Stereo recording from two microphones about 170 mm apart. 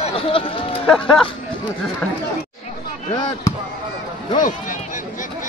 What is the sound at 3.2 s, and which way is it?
Speech, 25° left (ahead or behind).